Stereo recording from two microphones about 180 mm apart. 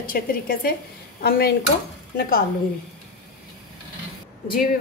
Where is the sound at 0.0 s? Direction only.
50° left (ahead or behind).